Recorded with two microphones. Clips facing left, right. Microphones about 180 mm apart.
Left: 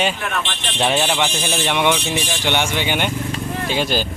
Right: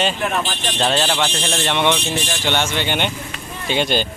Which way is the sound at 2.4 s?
15° left (ahead or behind).